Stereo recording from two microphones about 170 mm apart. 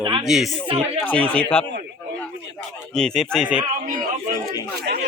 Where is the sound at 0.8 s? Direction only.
10° left (ahead or behind).